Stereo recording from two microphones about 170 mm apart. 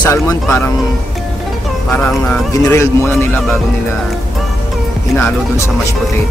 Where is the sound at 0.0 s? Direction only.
15° left (ahead or behind).